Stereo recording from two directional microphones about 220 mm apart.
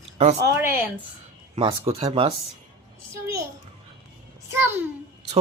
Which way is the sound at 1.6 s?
25° right (ahead or behind).